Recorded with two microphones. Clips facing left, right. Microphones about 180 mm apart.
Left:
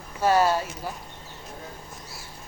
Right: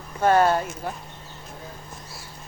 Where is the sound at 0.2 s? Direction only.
50° right (ahead or behind).